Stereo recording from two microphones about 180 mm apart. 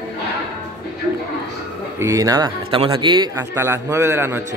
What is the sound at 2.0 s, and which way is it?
Speech, 15° right (ahead or behind).